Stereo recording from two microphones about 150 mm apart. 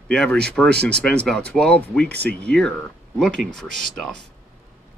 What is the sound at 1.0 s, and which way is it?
Speech, 5° left (ahead or behind).